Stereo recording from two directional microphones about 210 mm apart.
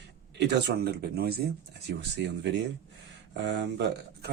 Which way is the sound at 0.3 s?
55° right (ahead or behind).